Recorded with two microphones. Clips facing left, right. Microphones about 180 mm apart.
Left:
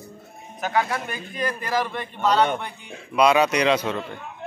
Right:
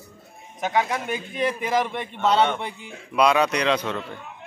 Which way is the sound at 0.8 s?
15° right (ahead or behind).